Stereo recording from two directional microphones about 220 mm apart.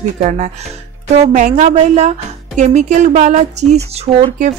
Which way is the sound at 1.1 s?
30° right (ahead or behind).